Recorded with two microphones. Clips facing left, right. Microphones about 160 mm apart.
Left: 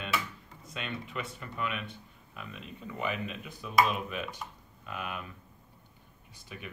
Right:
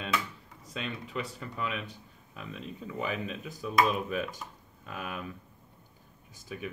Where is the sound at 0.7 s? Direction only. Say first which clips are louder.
Right 1 dB; 35° right (ahead or behind).